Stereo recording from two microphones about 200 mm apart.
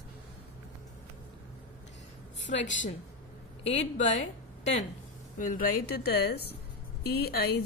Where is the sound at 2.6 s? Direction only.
40° left (ahead or behind).